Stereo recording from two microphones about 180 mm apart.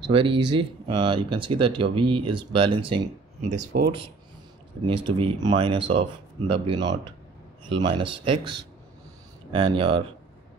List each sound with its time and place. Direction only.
0.0 s speech: 30° right (ahead or behind)
3.4 s speech: 45° right (ahead or behind)
4.8 s speech: 30° right (ahead or behind)